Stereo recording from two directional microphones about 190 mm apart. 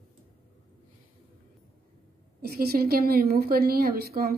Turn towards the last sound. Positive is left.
turn(degrees=-55)  # may be behind; listen again after turning